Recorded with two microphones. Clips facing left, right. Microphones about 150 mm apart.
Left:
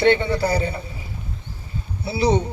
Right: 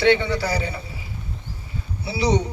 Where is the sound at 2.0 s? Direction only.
55° left (ahead or behind).